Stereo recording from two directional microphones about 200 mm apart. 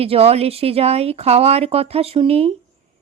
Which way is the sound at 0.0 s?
30° right (ahead or behind).